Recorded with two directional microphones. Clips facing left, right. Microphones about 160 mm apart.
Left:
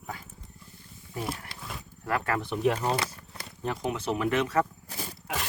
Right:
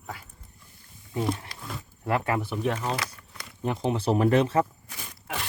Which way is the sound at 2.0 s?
20° right (ahead or behind).